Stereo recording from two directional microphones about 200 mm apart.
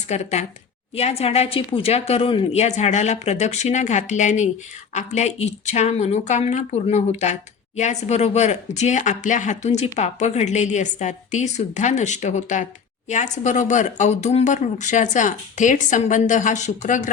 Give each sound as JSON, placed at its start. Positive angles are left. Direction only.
{"t": 0.1, "sound": "speech", "side_deg": 35}